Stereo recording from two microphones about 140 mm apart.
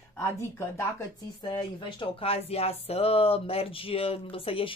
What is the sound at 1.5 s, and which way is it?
Speech, 35° left (ahead or behind).